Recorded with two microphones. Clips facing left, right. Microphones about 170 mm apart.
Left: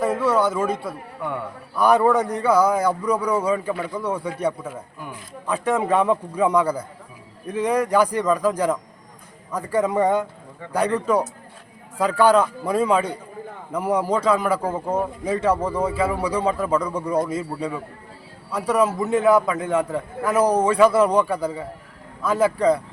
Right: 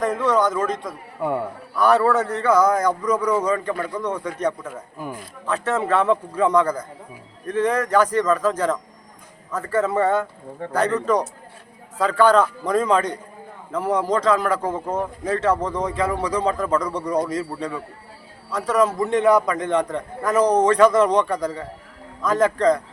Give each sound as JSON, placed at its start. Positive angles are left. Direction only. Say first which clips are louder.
{"t": 0.0, "sound": "a man's voice", "louder": "even", "side_deg": 10}
{"t": 1.2, "sound": "a man's voice", "louder": "right 5 dB", "side_deg": -35}
{"t": 1.7, "sound": "a man's voice", "louder": "even", "side_deg": 10}